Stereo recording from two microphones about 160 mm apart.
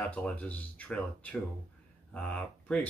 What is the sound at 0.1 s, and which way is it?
Speech, 10° left (ahead or behind).